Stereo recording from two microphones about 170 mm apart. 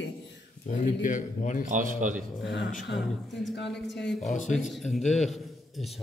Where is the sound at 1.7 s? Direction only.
50° right (ahead or behind).